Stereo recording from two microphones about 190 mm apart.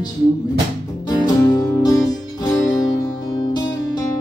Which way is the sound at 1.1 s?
20° left (ahead or behind).